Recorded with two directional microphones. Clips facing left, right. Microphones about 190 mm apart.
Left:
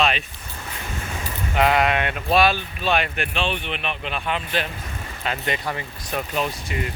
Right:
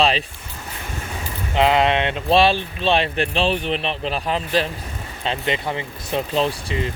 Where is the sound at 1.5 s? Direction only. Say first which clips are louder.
Right 2 dB; 20° right (ahead or behind).